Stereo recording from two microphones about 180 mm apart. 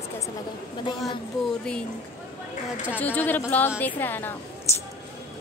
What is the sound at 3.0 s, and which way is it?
A woman's voice, 10° left (ahead or behind).